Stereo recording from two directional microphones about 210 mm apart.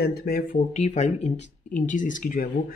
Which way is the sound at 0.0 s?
50° left (ahead or behind).